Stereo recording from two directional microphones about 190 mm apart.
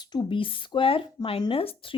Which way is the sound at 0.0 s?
25° left (ahead or behind).